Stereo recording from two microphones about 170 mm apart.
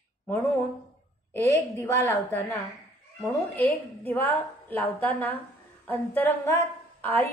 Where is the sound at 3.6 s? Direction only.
10° left (ahead or behind).